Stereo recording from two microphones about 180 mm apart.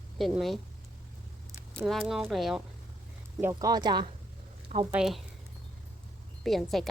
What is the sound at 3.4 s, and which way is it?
Speech, 15° right (ahead or behind).